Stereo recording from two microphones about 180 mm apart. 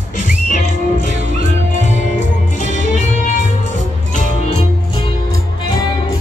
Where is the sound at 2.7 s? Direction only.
40° left (ahead or behind).